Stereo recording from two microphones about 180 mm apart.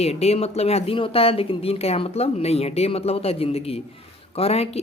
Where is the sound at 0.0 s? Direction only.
35° left (ahead or behind).